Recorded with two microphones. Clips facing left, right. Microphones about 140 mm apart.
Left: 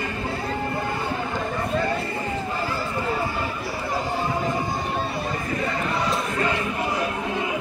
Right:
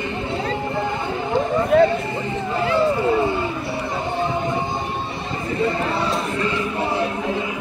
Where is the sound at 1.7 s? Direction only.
70° right (ahead or behind).